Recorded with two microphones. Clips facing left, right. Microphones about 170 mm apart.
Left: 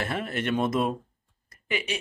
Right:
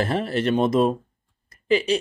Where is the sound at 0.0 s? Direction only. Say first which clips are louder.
Right 7 dB; 35° right (ahead or behind).